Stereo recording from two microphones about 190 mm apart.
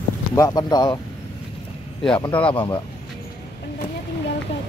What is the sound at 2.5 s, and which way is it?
Speech, 25° left (ahead or behind).